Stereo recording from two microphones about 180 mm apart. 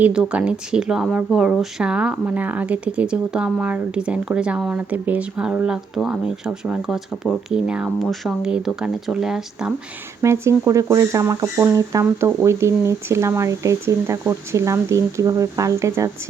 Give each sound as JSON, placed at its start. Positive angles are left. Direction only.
{"t": 0.0, "sound": "speech", "side_deg": -5}
{"t": 10.2, "sound": "speech", "side_deg": -15}